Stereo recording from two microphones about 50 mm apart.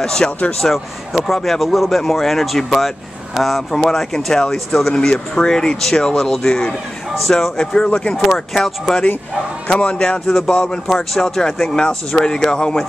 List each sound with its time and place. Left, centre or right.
0.0 s speech: centre
0.6 s speech: centre; by 8.1 s left
8.1 s speech: centre
9.7 s a man's voice: left
10.2 s speech: centre